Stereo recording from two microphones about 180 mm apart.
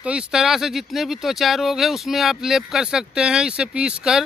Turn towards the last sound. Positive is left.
turn(degrees=-5)  # may be behind; listen again after turning